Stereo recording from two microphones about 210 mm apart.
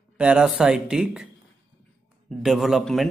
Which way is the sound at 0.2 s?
5° right (ahead or behind).